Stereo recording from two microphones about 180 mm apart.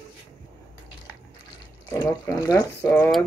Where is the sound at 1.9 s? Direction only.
20° left (ahead or behind).